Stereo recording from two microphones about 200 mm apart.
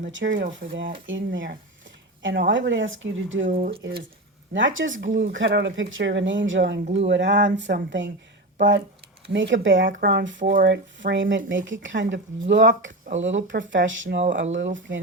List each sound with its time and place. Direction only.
0.0 s speech: 65° right (ahead or behind)
10.0 s speech: 55° right (ahead or behind)